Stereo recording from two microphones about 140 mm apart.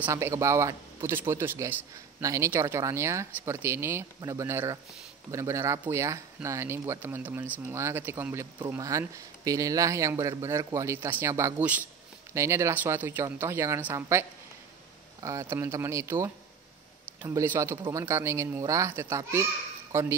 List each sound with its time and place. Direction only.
0.0 s speech: 20° right (ahead or behind)
15.2 s speech: 25° right (ahead or behind)